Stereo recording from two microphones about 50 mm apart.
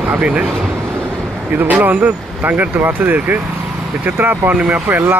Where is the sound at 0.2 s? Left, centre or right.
Right.